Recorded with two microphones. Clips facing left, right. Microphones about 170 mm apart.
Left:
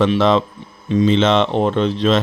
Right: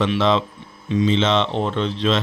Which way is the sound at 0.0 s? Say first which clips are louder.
Left 4 dB; 45° left (ahead or behind).